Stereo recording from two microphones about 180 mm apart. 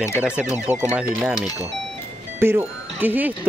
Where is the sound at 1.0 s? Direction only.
5° right (ahead or behind).